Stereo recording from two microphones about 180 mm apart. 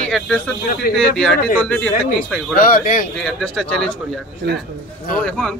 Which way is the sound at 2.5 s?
50° left (ahead or behind).